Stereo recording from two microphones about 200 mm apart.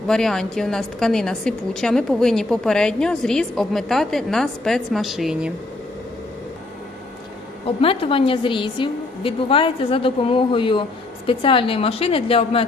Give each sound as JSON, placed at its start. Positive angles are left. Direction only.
{"t": 0.1, "sound": "a woman's voice", "side_deg": 0}
{"t": 7.6, "sound": "a woman's voice", "side_deg": 30}